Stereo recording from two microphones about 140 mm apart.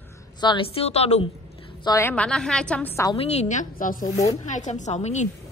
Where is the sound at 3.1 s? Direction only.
45° left (ahead or behind); by 4.0 s 75° left (ahead or behind).